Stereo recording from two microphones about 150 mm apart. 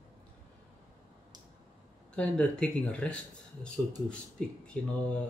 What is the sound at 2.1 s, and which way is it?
Speech, 5° left (ahead or behind).